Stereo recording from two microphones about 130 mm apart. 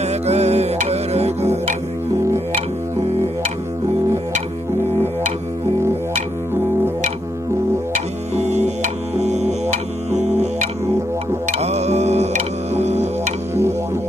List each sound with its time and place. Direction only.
0.0 s music: 55° right (ahead or behind)
8.4 s music: 60° right (ahead or behind)